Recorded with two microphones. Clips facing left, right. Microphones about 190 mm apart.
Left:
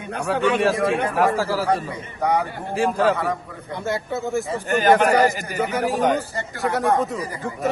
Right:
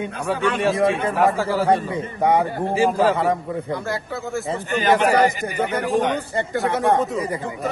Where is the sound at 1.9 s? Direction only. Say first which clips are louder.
Right 3 dB; 25° right (ahead or behind).